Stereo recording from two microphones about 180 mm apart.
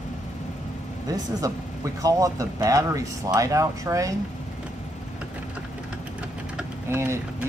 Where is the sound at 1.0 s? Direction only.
20° right (ahead or behind).